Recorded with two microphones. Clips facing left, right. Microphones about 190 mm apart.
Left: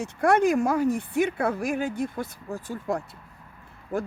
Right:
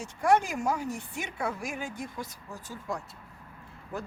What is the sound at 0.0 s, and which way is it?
Speech, 60° left (ahead or behind).